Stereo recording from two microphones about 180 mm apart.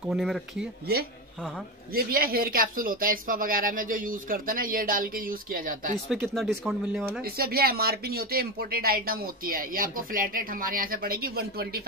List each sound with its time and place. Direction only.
0.1 s speech: centre (ahead or behind)
1.9 s speech: 55° right (ahead or behind)
6.0 s speech: centre (ahead or behind)
7.2 s speech: 55° right (ahead or behind)